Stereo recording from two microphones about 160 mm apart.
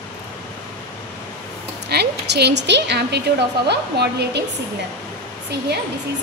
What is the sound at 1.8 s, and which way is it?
A woman's voice, 90° right.